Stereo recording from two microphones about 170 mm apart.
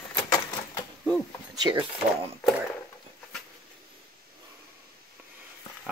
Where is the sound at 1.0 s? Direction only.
25° right (ahead or behind).